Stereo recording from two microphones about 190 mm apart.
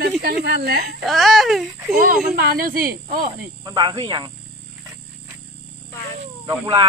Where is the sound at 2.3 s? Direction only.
50° right (ahead or behind).